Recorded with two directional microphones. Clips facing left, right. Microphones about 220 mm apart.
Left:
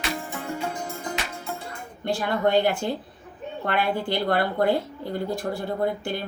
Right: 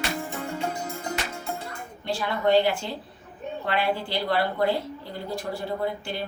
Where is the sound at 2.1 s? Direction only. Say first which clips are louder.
Even; 50° left (ahead or behind).